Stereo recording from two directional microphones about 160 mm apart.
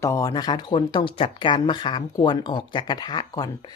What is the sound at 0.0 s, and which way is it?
Speech, 20° left (ahead or behind).